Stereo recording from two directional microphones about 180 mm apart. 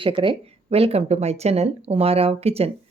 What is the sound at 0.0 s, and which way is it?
A woman's voice, 30° right (ahead or behind).